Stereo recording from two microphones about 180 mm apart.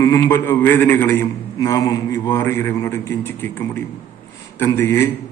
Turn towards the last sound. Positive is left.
turn(degrees=15)  # may be behind; listen again after turning